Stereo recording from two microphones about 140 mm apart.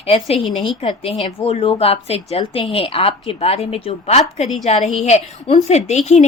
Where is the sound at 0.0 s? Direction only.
45° left (ahead or behind).